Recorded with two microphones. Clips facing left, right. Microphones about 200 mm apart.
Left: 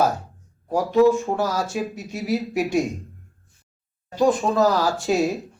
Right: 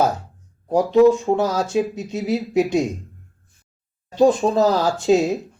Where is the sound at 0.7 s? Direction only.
20° right (ahead or behind).